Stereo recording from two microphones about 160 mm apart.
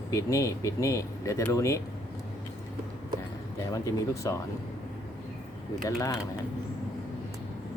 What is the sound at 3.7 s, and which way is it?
Speech, 20° left (ahead or behind).